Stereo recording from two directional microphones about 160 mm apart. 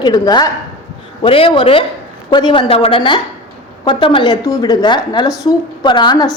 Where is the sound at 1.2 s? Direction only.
35° left (ahead or behind).